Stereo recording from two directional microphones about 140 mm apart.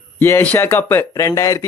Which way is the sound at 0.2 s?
20° left (ahead or behind).